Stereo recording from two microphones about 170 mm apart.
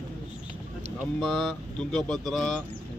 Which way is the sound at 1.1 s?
Centre (ahead or behind).